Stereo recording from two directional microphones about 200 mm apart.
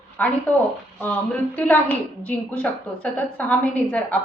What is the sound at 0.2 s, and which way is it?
Speech, 5° left (ahead or behind).